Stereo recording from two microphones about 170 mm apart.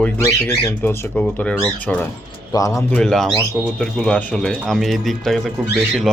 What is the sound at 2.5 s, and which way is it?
Speech, 20° left (ahead or behind).